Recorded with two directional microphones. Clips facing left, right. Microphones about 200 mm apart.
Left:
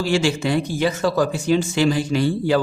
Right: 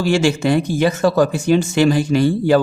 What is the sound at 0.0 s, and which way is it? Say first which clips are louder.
Speech: right 4 dB; 45° right (ahead or behind).